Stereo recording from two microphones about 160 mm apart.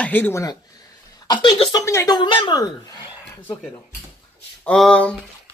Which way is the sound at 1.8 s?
20° left (ahead or behind).